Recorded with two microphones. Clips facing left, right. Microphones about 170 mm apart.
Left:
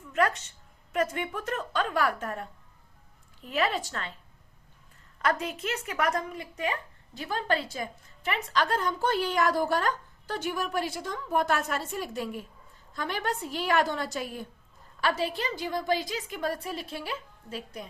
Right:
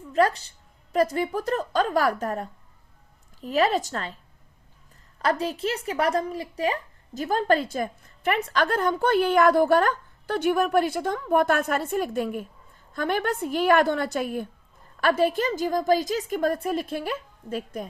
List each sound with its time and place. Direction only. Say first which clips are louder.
0.0 s a woman's voice: right 5 dB; 35° right (ahead or behind)
5.2 s a woman's voice: right 4 dB; 30° right (ahead or behind); by 17.8 s 50° right (ahead or behind)